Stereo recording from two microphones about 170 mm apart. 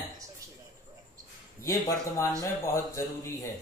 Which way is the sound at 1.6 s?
20° left (ahead or behind).